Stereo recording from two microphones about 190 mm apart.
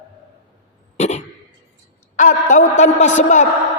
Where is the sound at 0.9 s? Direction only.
35° left (ahead or behind).